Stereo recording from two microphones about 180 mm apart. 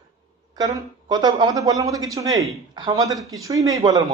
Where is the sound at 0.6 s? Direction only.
25° right (ahead or behind).